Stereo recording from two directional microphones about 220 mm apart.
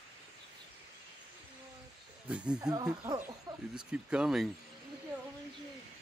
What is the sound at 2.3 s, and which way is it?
Snake, 5° right (ahead or behind).